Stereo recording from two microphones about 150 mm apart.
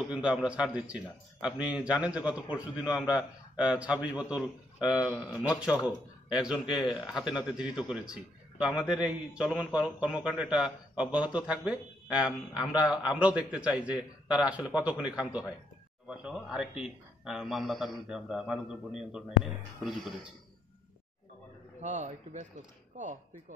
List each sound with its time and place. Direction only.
0.0 s a man's voice: 5° right (ahead or behind)
21.8 s speech: 55° right (ahead or behind)